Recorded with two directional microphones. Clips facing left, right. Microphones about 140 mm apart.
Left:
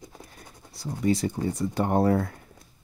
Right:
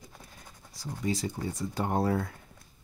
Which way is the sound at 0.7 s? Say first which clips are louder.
Left 7 dB; 65° left (ahead or behind).